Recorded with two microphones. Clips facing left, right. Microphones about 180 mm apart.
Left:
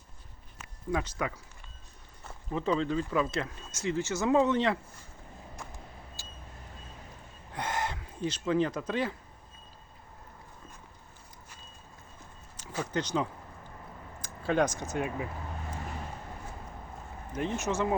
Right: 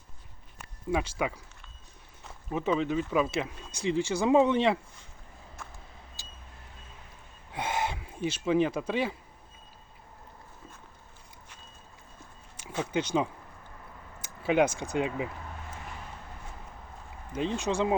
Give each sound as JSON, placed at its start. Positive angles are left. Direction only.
{"t": 0.9, "sound": "speech", "side_deg": -10}
{"t": 2.5, "sound": "speech", "side_deg": -15}
{"t": 7.5, "sound": "a sound", "side_deg": -10}
{"t": 8.2, "sound": "speech", "side_deg": -10}
{"t": 12.8, "sound": "speech", "side_deg": -10}
{"t": 14.4, "sound": "speech", "side_deg": -10}
{"t": 17.6, "sound": "speech", "side_deg": -15}